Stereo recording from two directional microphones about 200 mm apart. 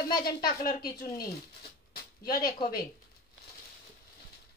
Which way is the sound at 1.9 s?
50° left (ahead or behind).